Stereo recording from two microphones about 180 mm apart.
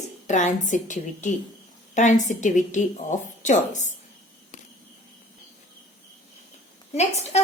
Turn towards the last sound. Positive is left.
turn(degrees=35)  # may be behind; listen again after turning